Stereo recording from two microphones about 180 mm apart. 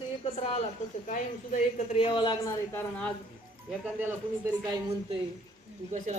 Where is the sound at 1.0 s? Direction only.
45° left (ahead or behind); by 2.6 s 25° left (ahead or behind).